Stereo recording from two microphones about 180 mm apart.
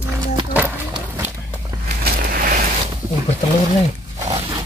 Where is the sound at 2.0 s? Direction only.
50° right (ahead or behind).